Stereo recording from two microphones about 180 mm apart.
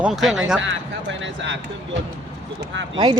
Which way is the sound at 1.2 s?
90° right.